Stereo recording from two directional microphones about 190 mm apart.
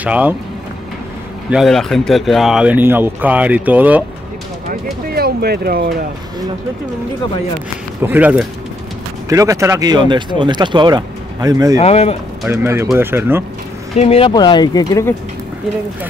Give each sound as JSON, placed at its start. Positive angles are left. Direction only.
{"t": 0.0, "sound": "speech", "side_deg": -10}
{"t": 1.5, "sound": "speech", "side_deg": 0}
{"t": 5.1, "sound": "speech", "side_deg": -55}
{"t": 8.0, "sound": "speech", "side_deg": -10}
{"t": 11.8, "sound": "speech", "side_deg": 30}
{"t": 12.4, "sound": "speech", "side_deg": -10}
{"t": 13.9, "sound": "speech", "side_deg": 30}